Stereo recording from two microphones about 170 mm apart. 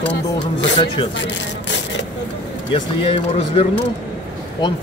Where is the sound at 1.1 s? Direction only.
90° left.